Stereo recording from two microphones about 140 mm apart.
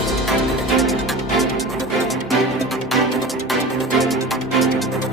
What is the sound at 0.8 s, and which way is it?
Music, centre (ahead or behind).